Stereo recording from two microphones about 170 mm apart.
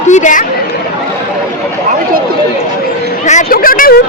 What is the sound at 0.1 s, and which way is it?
Speech, 45° left (ahead or behind).